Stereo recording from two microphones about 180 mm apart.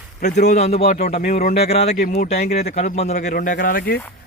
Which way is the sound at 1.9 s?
50° left (ahead or behind).